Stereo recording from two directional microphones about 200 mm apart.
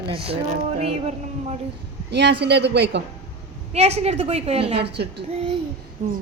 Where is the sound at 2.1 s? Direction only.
55° right (ahead or behind).